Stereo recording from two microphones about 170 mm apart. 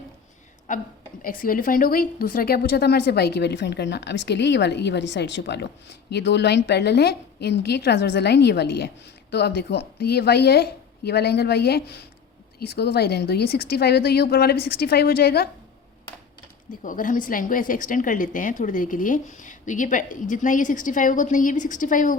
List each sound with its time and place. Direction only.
0.7 s a woman's voice: 50° left (ahead or behind); by 15.4 s 65° left (ahead or behind)
16.8 s a woman's voice: 50° left (ahead or behind)